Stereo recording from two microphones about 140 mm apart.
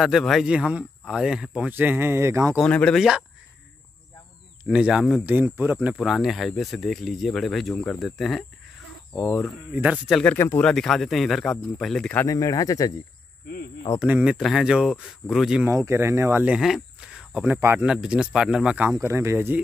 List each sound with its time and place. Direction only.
0.0 s speech: centre (ahead or behind); by 2.5 s 20° right (ahead or behind)
2.6 s speech: 5° left (ahead or behind)
4.6 s speech: 5° right (ahead or behind)
5.9 s speech: centre (ahead or behind)
9.7 s speech: 15° right (ahead or behind)
10.0 s speech: centre (ahead or behind)
10.3 s speech: 15° left (ahead or behind)
10.7 s speech: centre (ahead or behind)
12.2 s speech: 25° left (ahead or behind)
14.0 s speech: 10° right (ahead or behind)
15.6 s speech: 20° right (ahead or behind)